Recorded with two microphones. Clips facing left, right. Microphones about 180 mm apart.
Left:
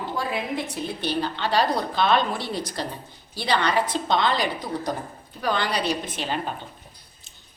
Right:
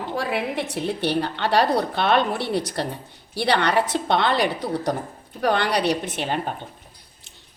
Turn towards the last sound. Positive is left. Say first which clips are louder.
# right 3 dB
turn(degrees=-55)  # may be behind; listen again after turning